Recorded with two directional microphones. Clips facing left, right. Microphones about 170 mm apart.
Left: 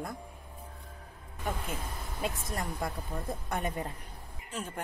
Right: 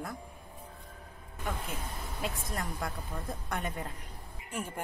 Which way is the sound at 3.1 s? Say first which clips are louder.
Left 2 dB; 20° left (ahead or behind).